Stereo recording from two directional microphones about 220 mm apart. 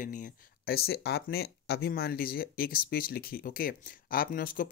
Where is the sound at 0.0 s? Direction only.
35° left (ahead or behind).